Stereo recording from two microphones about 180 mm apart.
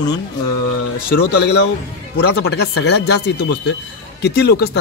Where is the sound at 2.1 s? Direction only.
70° left (ahead or behind).